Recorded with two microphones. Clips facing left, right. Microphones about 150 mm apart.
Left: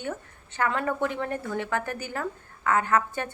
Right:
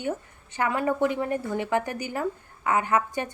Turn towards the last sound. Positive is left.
turn(degrees=-15)  # may be behind; listen again after turning